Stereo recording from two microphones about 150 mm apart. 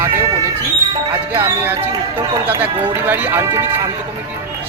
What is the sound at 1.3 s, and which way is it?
Speech, 15° right (ahead or behind).